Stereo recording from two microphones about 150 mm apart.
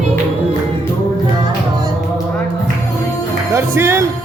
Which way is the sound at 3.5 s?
15° right (ahead or behind).